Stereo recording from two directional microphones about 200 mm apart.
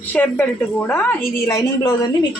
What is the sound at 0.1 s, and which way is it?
A woman's voice, 10° left (ahead or behind).